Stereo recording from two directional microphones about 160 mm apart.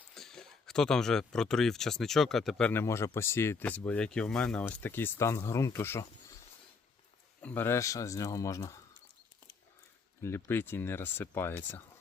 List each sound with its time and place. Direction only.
0.1 s speech: 5° left (ahead or behind)
7.4 s speech: 15° left (ahead or behind)
10.2 s speech: 15° left (ahead or behind)